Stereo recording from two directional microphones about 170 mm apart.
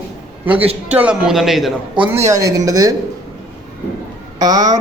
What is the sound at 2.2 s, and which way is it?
Speech, 20° right (ahead or behind).